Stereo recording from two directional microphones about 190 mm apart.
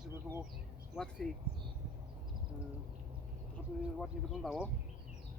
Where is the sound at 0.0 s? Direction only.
10° right (ahead or behind).